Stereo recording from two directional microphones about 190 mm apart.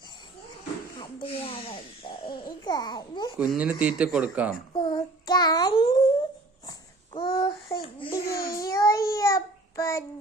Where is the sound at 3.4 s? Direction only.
5° right (ahead or behind).